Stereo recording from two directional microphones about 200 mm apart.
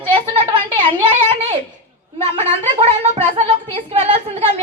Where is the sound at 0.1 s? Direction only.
25° right (ahead or behind).